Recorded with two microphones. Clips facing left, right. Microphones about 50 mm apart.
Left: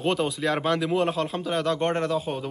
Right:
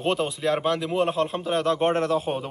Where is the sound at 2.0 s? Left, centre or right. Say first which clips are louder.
Right 2 dB; right.